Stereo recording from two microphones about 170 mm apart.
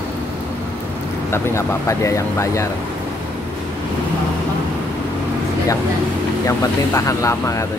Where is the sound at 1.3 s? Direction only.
15° left (ahead or behind).